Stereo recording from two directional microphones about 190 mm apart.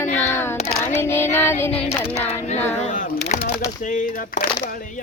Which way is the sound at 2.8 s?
45° left (ahead or behind).